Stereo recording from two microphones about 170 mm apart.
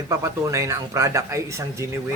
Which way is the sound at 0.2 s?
20° right (ahead or behind).